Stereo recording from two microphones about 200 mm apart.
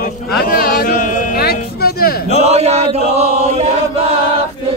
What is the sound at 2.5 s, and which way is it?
Chant, 30° right (ahead or behind).